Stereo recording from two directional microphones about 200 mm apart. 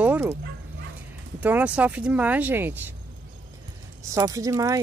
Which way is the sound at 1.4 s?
10° right (ahead or behind).